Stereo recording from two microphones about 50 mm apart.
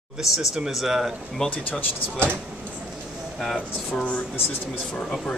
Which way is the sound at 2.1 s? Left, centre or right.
Right.